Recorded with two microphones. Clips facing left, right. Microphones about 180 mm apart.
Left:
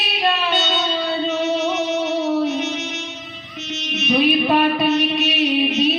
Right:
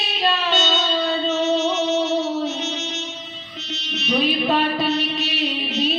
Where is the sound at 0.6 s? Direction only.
15° left (ahead or behind).